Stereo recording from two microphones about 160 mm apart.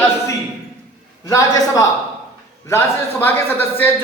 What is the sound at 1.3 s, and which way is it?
A man's voice, 20° left (ahead or behind).